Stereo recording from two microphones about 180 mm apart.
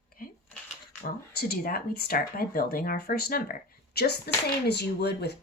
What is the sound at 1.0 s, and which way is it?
Speech, 60° left (ahead or behind).